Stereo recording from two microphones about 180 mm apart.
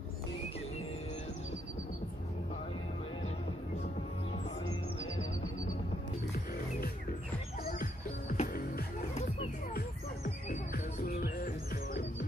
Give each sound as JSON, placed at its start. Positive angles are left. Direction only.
{"t": 6.3, "sound": "music", "side_deg": 60}
{"t": 7.8, "sound": "music", "side_deg": 50}